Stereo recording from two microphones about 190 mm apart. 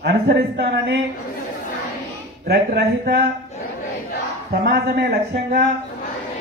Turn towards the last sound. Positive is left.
turn(degrees=-50)  # may be behind; listen again after turning